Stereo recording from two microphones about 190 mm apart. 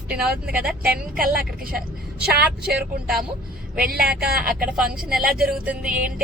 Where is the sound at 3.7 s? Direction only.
50° right (ahead or behind).